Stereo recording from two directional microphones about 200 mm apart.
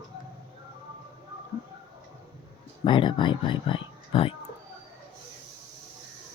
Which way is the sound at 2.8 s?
25° left (ahead or behind).